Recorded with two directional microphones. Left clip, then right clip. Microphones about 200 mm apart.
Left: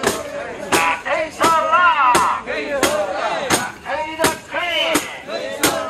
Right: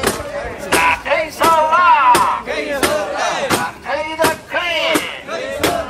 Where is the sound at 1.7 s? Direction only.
55° right (ahead or behind).